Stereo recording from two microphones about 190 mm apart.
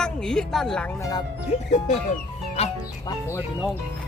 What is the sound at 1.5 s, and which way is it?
Speech, 35° left (ahead or behind).